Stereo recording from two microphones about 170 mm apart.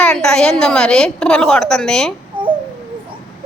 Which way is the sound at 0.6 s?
5° left (ahead or behind).